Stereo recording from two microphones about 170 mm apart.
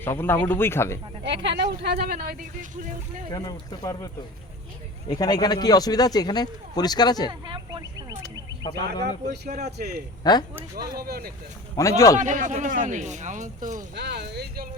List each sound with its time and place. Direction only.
0.0 s speech: 15° left (ahead or behind)
1.2 s speech: 90° right; by 2.1 s 70° right (ahead or behind)
2.1 s speech: 50° right (ahead or behind)
3.3 s speech: 20° left (ahead or behind)
7.3 s speech: 25° right (ahead or behind)
9.6 s speech: 75° right (ahead or behind)
10.3 s speech: 25° left (ahead or behind)
10.8 s speech: 60° right (ahead or behind)
11.8 s speech: 20° left (ahead or behind)
12.2 s speech: 45° right (ahead or behind)
13.9 s speech: 75° right (ahead or behind)